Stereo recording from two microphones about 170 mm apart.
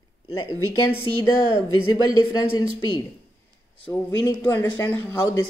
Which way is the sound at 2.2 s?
25° left (ahead or behind).